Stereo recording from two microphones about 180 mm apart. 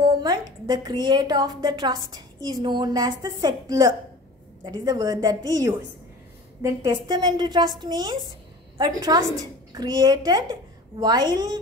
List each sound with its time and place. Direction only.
0.0 s a woman's voice: 25° right (ahead or behind)